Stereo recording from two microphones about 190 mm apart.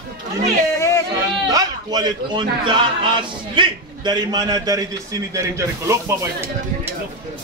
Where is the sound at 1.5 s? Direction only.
20° right (ahead or behind).